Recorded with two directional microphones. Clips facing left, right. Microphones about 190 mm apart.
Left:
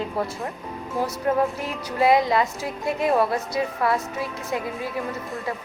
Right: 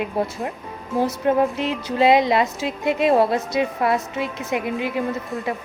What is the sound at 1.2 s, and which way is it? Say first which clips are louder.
A woman's voice: right 3 dB; 20° right (ahead or behind).